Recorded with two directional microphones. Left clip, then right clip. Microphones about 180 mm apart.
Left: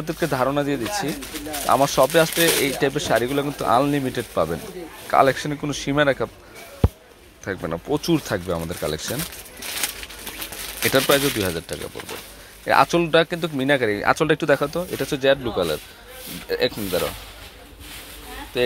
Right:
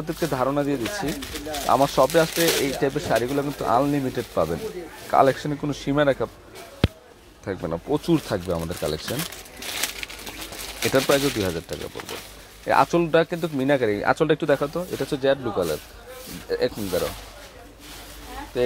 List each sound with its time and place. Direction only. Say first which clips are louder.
0.0 s speech: left 2 dB; 5° left (ahead or behind)
7.4 s speech: left 1 dB; centre (ahead or behind)
10.8 s speech: left 2 dB; 5° left (ahead or behind)
16.4 s speech: left 2 dB; 5° left (ahead or behind)